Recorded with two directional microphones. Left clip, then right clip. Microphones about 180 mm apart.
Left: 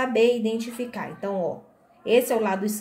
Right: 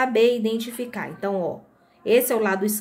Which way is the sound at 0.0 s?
40° right (ahead or behind).